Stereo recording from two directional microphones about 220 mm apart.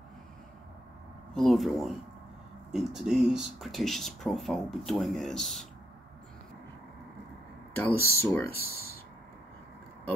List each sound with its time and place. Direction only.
1.3 s speech: centre (ahead or behind)
7.7 s speech: 10° left (ahead or behind)
8.5 s speech: 45° left (ahead or behind)